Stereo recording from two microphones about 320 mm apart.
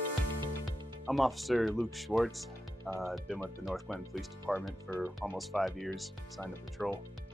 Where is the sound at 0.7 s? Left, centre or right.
Centre.